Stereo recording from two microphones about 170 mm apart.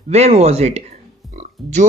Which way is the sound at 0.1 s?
40° right (ahead or behind).